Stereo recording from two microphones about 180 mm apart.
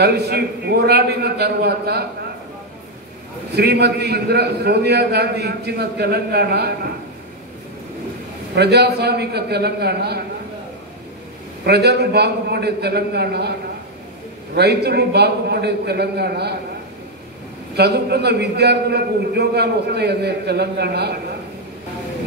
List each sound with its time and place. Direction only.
0.0 s a man's voice: 65° right (ahead or behind)
3.5 s a man's voice: 65° right (ahead or behind)
8.5 s a man's voice: 65° right (ahead or behind)
11.6 s a man's voice: 65° right (ahead or behind)
17.7 s a man's voice: 65° right (ahead or behind)